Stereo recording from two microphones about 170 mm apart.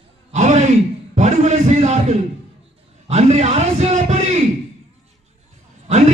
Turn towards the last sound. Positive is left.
turn(degrees=-40)  # may be behind; listen again after turning